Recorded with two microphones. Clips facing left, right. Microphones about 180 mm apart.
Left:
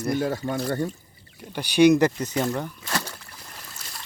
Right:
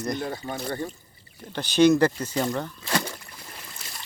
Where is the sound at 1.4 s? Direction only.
10° left (ahead or behind).